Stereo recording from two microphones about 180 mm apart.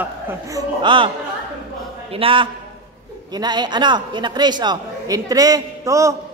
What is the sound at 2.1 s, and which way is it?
A man's voice, 30° right (ahead or behind).